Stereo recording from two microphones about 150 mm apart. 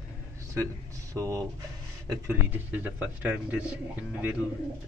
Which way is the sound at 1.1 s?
20° right (ahead or behind).